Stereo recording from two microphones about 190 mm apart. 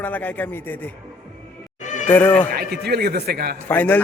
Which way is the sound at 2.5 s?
55° right (ahead or behind).